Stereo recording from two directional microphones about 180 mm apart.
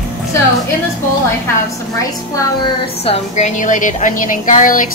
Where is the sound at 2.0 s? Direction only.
20° left (ahead or behind).